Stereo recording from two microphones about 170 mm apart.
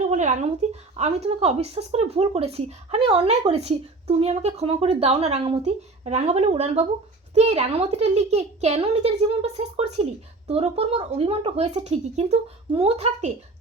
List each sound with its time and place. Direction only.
0.1 s a woman's voice: 45° right (ahead or behind)